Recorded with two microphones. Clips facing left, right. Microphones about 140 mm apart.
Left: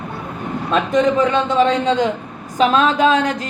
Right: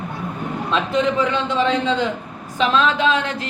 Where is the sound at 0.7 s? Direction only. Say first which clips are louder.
Left 4 dB; 45° left (ahead or behind).